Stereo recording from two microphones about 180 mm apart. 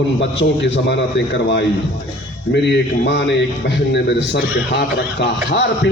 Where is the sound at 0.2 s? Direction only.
85° left.